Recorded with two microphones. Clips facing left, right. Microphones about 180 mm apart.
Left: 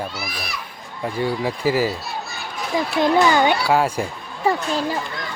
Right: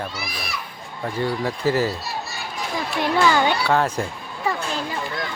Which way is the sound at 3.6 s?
10° left (ahead or behind).